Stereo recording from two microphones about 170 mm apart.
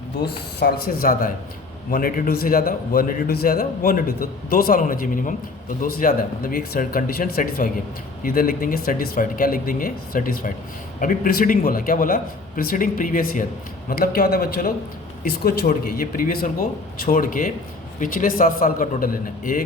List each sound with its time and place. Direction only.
0.6 s a man's voice: 60° left (ahead or behind)